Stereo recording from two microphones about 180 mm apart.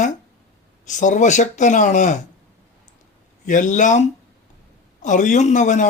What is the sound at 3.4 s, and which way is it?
Speech, 45° left (ahead or behind).